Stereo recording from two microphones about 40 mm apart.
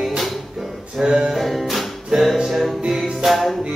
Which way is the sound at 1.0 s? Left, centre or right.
Centre.